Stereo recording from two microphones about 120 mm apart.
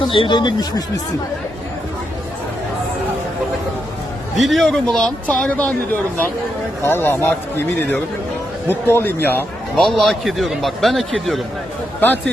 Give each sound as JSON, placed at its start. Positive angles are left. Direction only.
{"t": 0.1, "sound": "speech", "side_deg": 45}
{"t": 4.4, "sound": "a man's voice", "side_deg": 0}
{"t": 9.7, "sound": "a man's voice", "side_deg": 5}
{"t": 11.9, "sound": "a man's voice", "side_deg": 15}